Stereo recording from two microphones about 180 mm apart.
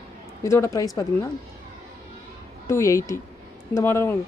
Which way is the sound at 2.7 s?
15° left (ahead or behind).